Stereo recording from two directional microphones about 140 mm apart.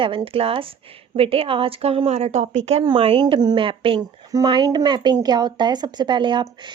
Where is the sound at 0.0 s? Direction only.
40° right (ahead or behind).